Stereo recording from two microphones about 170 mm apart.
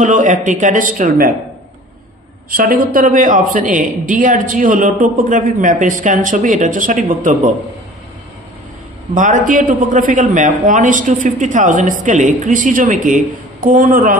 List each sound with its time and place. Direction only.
0.0 s speech: 50° right (ahead or behind)
2.5 s speech: 55° right (ahead or behind)
9.1 s speech: 50° right (ahead or behind)